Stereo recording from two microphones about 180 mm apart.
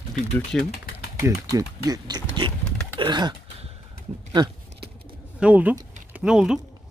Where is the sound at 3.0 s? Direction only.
25° right (ahead or behind).